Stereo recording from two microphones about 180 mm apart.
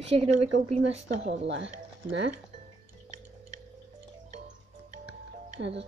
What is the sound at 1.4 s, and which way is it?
Speech, 85° right.